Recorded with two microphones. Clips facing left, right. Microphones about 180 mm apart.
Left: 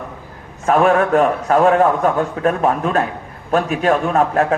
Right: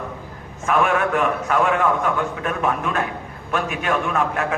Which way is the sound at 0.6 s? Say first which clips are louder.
Left 6 dB; 35° left (ahead or behind).